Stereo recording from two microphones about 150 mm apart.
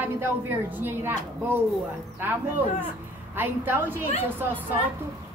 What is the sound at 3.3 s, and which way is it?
Speech, 15° right (ahead or behind).